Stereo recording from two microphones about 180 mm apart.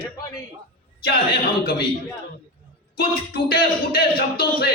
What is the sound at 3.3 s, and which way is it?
A man's voice, 60° left (ahead or behind).